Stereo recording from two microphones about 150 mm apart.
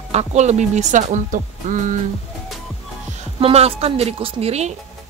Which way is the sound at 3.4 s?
40° right (ahead or behind).